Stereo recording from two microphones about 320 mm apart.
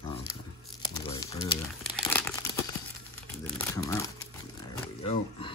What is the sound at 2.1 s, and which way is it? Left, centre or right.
Crumpling, centre.